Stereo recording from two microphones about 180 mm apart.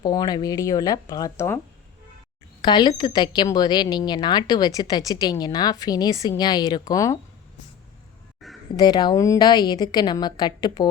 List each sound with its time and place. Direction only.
0.0 s a woman's voice: 25° left (ahead or behind)
2.6 s a woman's voice: 25° left (ahead or behind)
8.7 s a woman's voice: 25° left (ahead or behind)